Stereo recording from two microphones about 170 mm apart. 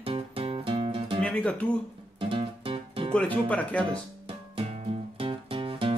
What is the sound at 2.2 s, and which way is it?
Music, 30° right (ahead or behind).